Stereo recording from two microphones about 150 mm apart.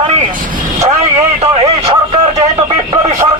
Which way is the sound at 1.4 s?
40° right (ahead or behind).